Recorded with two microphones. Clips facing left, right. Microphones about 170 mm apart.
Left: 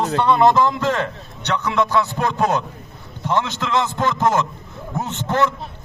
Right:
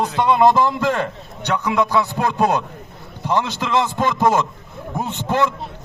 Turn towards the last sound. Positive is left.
turn(degrees=-15)  # may be behind; listen again after turning